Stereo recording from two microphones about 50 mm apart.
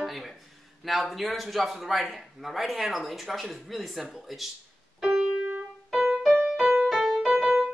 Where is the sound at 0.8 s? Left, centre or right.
Centre.